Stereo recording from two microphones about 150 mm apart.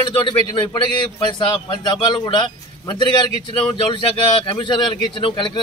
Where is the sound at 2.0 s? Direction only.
30° left (ahead or behind).